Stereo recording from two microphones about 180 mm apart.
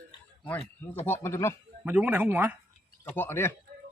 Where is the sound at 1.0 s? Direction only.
15° left (ahead or behind).